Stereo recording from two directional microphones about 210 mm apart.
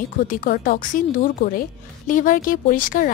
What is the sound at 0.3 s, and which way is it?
A woman's voice, 40° left (ahead or behind).